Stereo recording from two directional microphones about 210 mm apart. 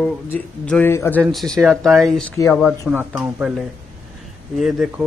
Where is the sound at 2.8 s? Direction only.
10° right (ahead or behind).